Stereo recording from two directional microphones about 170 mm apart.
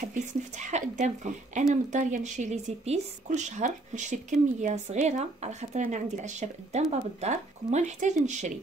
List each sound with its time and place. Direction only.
0.0 s speech: 45° right (ahead or behind)